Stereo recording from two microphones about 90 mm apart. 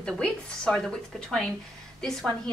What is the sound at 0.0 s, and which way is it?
Speech, 5° left (ahead or behind).